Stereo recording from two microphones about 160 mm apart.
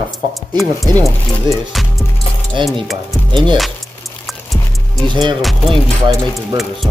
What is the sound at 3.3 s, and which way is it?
Speech, 30° right (ahead or behind).